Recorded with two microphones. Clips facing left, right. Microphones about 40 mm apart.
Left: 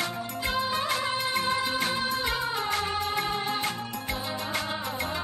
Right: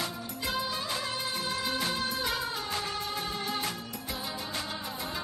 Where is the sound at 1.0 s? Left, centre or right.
Left.